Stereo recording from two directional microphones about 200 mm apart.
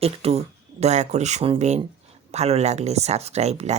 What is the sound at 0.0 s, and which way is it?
Speech, 30° right (ahead or behind).